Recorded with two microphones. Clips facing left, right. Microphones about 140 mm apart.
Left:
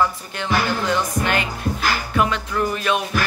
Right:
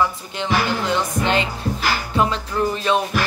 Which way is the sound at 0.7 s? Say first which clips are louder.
Even; 20° right (ahead or behind).